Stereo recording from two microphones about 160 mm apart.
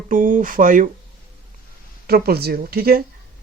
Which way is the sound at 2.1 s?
75° right (ahead or behind).